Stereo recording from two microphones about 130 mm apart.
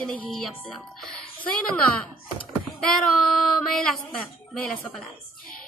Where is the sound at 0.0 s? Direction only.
5° left (ahead or behind).